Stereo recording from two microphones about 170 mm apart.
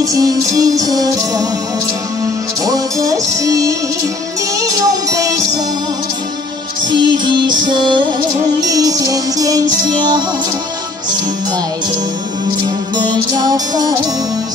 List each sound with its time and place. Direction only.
0.0 s music: 20° right (ahead or behind)
2.6 s music: 20° right (ahead or behind)
6.9 s music: 25° right (ahead or behind)
12.6 s music: 25° right (ahead or behind)